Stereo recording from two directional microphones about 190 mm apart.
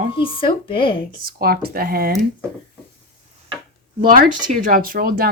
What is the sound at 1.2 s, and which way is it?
Speech, 50° right (ahead or behind).